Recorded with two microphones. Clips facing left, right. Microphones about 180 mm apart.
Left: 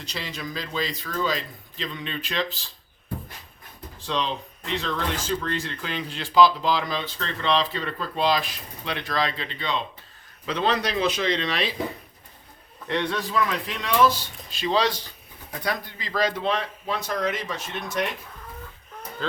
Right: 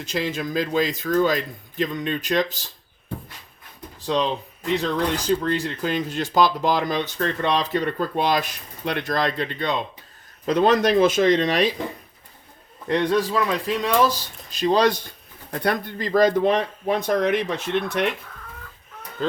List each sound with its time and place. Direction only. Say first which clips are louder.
0.0 s speech: right 8 dB; 50° right (ahead or behind)
4.0 s speech: right 5 dB; 40° right (ahead or behind)
12.9 s speech: right 6 dB; 40° right (ahead or behind); by 18.0 s 60° right (ahead or behind)